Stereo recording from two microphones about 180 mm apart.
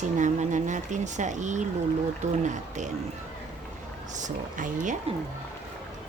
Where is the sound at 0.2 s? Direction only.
40° right (ahead or behind).